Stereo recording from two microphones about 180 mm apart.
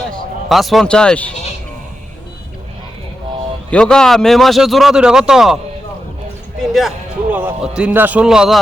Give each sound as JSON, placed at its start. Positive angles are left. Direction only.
{"t": 0.4, "sound": "a man's voice", "side_deg": 0}
{"t": 3.7, "sound": "a man's voice", "side_deg": 5}
{"t": 6.6, "sound": "a man's voice", "side_deg": 0}